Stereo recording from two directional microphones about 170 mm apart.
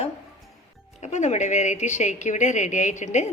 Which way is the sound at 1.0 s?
45° left (ahead or behind).